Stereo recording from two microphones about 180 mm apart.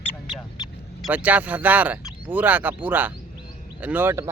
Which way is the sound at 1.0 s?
10° right (ahead or behind).